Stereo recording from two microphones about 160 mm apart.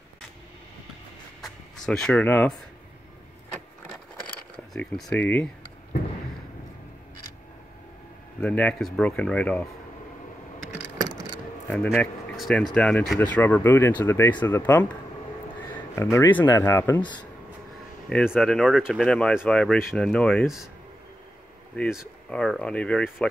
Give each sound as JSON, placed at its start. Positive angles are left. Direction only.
{"t": 1.4, "sound": "a sound", "side_deg": 5}
{"t": 5.1, "sound": "speech", "side_deg": 10}
{"t": 8.4, "sound": "speech", "side_deg": 10}
{"t": 11.7, "sound": "speech", "side_deg": 5}
{"t": 15.9, "sound": "speech", "side_deg": 15}
{"t": 17.0, "sound": "speech", "side_deg": 30}
{"t": 18.1, "sound": "speech", "side_deg": 0}
{"t": 22.3, "sound": "speech", "side_deg": 5}